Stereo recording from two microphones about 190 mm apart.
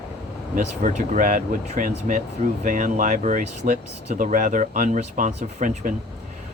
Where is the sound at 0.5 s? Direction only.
40° right (ahead or behind).